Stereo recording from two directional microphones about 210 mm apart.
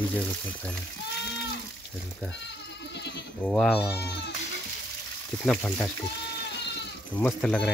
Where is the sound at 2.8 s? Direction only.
55° left (ahead or behind).